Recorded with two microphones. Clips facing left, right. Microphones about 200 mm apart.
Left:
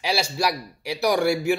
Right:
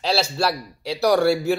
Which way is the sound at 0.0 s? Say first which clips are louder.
Right 2 dB; 15° left (ahead or behind).